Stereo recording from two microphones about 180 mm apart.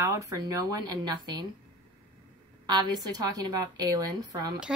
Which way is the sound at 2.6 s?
25° right (ahead or behind).